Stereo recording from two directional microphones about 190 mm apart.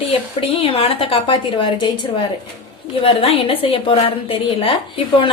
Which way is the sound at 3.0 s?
30° left (ahead or behind).